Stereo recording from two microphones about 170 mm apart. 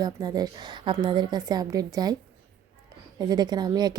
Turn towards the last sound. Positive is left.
turn(degrees=-25)  # may be behind; listen again after turning